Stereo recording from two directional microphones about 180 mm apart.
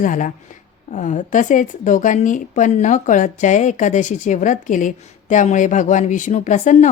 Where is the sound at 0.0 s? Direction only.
45° left (ahead or behind).